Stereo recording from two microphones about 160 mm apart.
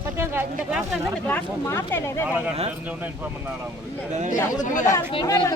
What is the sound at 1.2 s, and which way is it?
Speech, 15° left (ahead or behind).